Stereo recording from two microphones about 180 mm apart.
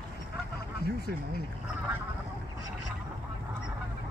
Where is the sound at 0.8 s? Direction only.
60° left (ahead or behind).